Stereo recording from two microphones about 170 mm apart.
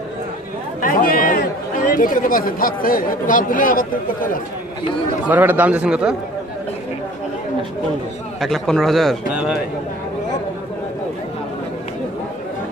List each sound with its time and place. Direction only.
0.7 s chatter: 55° left (ahead or behind)
2.0 s speech: 55° left (ahead or behind)
5.3 s a man's voice: 10° right (ahead or behind)
8.4 s a man's voice: centre (ahead or behind)